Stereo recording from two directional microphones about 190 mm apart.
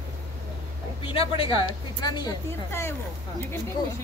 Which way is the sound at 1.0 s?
30° left (ahead or behind).